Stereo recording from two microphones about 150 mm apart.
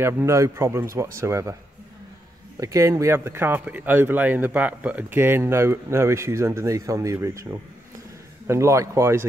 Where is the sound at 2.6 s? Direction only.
20° right (ahead or behind).